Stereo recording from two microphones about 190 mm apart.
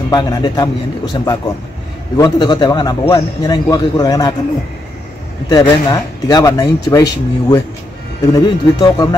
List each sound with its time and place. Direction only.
0.1 s a man's voice: 20° left (ahead or behind)
5.5 s a man's voice: 20° left (ahead or behind)